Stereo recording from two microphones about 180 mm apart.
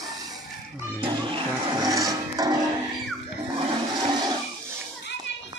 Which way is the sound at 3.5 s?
25° right (ahead or behind).